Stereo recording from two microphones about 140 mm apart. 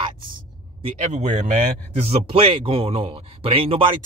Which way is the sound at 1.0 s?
55° right (ahead or behind).